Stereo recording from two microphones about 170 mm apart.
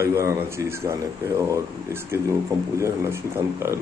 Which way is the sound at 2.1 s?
15° right (ahead or behind).